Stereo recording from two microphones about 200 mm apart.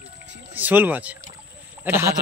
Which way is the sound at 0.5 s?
10° right (ahead or behind).